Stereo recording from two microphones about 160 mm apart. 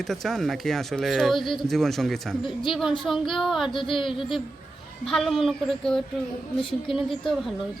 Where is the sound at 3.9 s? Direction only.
30° left (ahead or behind).